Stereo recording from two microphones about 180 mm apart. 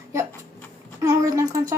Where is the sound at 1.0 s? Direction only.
15° right (ahead or behind).